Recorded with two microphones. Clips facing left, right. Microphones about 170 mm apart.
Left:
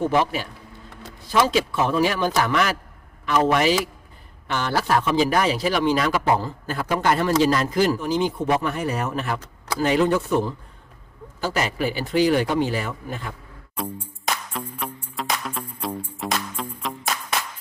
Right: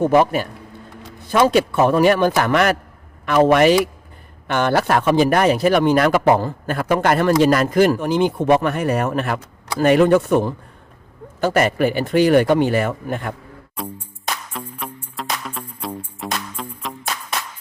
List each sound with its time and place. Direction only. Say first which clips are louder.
0.1 s a man's voice: right 6 dB; 50° right (ahead or behind)
14.5 s music: even; centre (ahead or behind)
15.7 s music: even; 10° right (ahead or behind)